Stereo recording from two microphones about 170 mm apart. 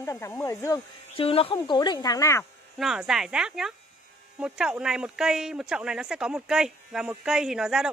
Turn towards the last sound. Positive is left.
turn(degrees=-5)  # may be behind; listen again after turning